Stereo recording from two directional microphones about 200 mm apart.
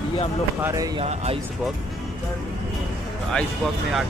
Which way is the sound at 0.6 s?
15° right (ahead or behind).